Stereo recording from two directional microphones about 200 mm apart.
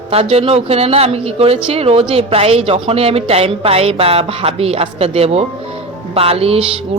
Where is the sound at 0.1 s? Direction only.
30° right (ahead or behind).